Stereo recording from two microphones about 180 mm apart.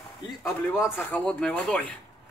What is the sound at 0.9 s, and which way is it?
Speech, 5° left (ahead or behind).